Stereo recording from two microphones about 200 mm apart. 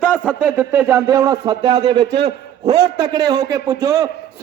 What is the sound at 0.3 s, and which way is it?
A man's voice, 10° right (ahead or behind).